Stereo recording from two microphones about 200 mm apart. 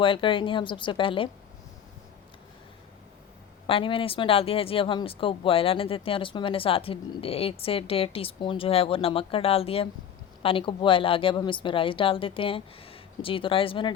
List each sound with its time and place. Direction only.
0.0 s speech: 25° left (ahead or behind)
3.7 s speech: 25° left (ahead or behind)